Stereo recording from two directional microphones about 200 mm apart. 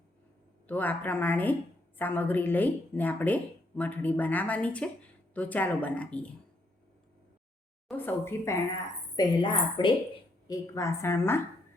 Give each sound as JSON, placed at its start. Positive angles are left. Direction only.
{"t": 0.7, "sound": "speech", "side_deg": 10}
{"t": 7.9, "sound": "a woman's voice", "side_deg": 10}